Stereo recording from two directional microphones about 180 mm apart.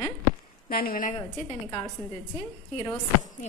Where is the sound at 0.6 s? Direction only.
55° left (ahead or behind).